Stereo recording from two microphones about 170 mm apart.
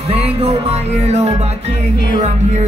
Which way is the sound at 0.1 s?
35° right (ahead or behind).